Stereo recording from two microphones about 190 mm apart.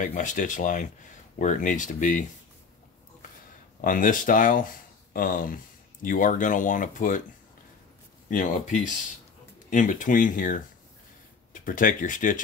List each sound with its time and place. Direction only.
0.0 s speech: 40° left (ahead or behind)
3.8 s speech: 45° left (ahead or behind)
8.3 s speech: 40° left (ahead or behind)
11.6 s speech: 45° left (ahead or behind)